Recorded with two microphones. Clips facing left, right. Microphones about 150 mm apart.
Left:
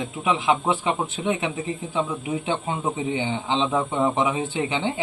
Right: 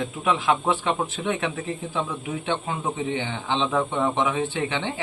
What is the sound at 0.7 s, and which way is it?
Speech, 5° left (ahead or behind).